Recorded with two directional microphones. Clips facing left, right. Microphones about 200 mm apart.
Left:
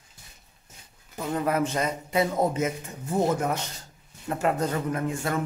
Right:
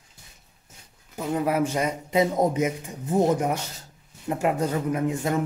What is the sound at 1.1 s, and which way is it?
A man's voice, 10° right (ahead or behind).